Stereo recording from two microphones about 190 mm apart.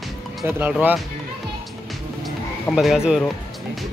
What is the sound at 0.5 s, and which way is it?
Speech, 10° right (ahead or behind).